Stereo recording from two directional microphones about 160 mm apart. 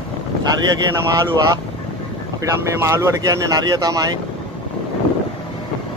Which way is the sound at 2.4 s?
20° right (ahead or behind).